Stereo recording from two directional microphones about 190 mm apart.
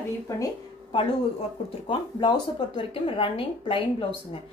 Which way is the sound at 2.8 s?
30° left (ahead or behind).